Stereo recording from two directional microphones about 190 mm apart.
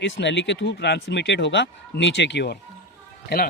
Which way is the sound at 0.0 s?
70° left (ahead or behind).